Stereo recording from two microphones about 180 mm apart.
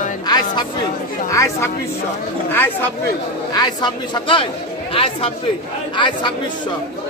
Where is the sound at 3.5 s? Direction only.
25° left (ahead or behind).